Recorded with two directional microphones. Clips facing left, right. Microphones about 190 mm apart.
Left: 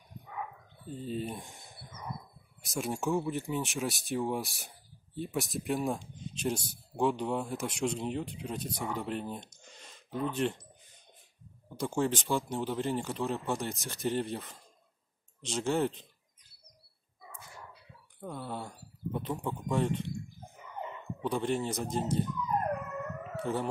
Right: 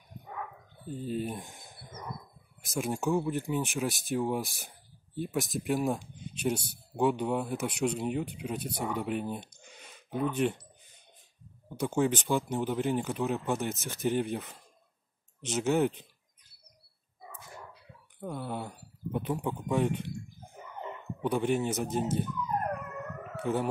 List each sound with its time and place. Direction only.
0.8 s speech: 5° right (ahead or behind)
8.5 s speech: 70° right (ahead or behind)
8.9 s speech: 5° right (ahead or behind)
11.7 s speech: 5° right (ahead or behind)
18.2 s speech: 5° right (ahead or behind)
21.2 s speech: 10° right (ahead or behind)
23.3 s speech: 5° right (ahead or behind)